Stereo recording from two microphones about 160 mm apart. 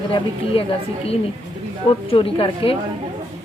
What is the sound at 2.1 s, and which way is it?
Speech, 35° left (ahead or behind).